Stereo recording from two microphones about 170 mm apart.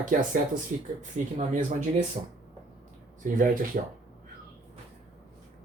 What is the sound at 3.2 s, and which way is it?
Speech, 50° right (ahead or behind).